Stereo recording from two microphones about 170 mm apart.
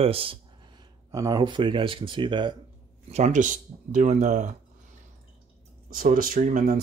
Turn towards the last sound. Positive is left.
turn(degrees=-55)  # may be behind; listen again after turning